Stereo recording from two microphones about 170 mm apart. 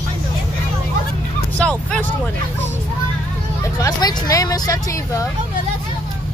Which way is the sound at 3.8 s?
20° left (ahead or behind).